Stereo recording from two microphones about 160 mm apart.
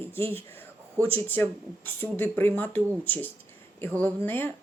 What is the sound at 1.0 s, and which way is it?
Speech, 15° right (ahead or behind).